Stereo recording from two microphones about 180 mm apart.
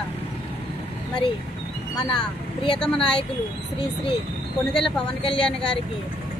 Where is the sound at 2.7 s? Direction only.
5° left (ahead or behind).